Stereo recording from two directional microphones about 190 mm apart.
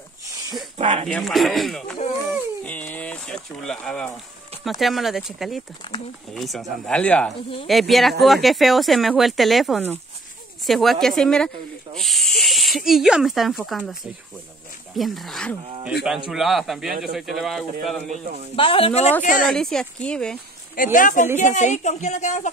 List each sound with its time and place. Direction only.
0.7 s a sound: 35° right (ahead or behind)
1.0 s speech: centre (ahead or behind)
15.0 s speech: centre (ahead or behind)
18.6 s a woman's voice: 30° left (ahead or behind)
19.2 s speech: 45° left (ahead or behind)
19.5 s speech: 5° left (ahead or behind)
20.7 s a woman's voice: 45° left (ahead or behind)